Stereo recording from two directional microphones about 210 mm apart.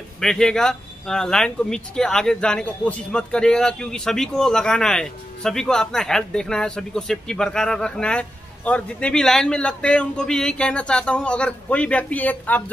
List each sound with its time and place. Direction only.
0.2 s speech: centre (ahead or behind)